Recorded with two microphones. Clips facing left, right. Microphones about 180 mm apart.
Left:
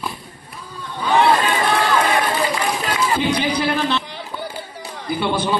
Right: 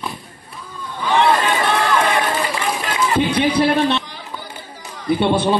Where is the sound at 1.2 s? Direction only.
35° left (ahead or behind).